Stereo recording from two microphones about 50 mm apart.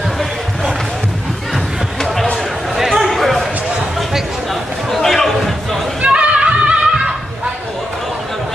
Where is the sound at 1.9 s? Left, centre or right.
Centre.